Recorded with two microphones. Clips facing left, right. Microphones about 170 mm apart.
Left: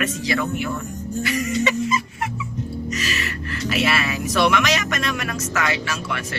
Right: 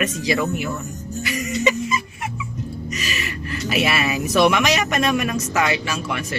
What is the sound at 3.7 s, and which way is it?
Speech, 15° right (ahead or behind).